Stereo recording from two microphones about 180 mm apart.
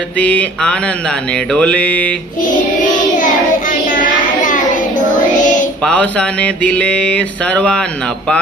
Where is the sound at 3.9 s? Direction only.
45° left (ahead or behind).